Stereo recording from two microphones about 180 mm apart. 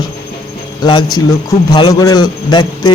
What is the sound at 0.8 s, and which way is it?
A man's voice, 25° left (ahead or behind).